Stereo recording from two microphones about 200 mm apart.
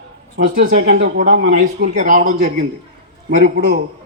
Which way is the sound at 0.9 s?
45° right (ahead or behind).